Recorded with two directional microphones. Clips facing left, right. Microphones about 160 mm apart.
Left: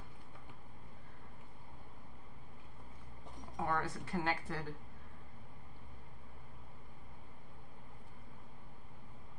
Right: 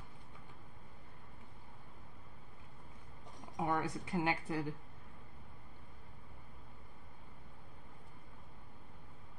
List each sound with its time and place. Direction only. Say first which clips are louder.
3.5 s speech: right 1 dB; 20° right (ahead or behind)